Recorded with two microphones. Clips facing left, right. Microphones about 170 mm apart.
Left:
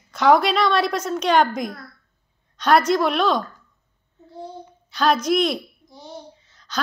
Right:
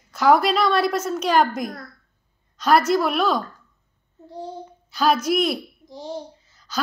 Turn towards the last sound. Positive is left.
turn(degrees=-5)  # may be behind; listen again after turning